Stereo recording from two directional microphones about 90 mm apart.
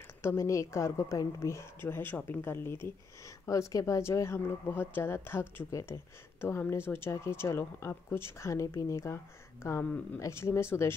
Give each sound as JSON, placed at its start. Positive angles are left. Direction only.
{"t": 0.2, "sound": "a woman's voice", "side_deg": 30}
{"t": 3.4, "sound": "speech", "side_deg": 35}
{"t": 5.7, "sound": "a woman's voice", "side_deg": 40}
{"t": 6.4, "sound": "speech", "side_deg": 30}